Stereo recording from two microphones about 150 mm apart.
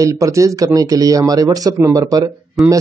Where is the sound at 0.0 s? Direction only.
20° right (ahead or behind).